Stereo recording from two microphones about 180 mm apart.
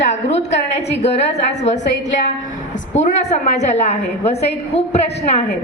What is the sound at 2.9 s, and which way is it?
A woman's voice, 40° left (ahead or behind).